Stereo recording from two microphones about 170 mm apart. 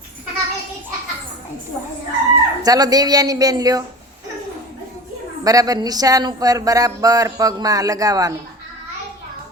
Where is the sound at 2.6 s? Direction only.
20° right (ahead or behind).